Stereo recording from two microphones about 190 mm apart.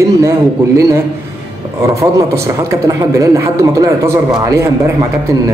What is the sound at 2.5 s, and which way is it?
A man's voice, 15° right (ahead or behind).